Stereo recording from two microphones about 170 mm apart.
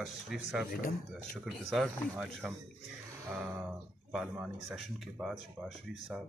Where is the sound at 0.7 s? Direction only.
55° left (ahead or behind).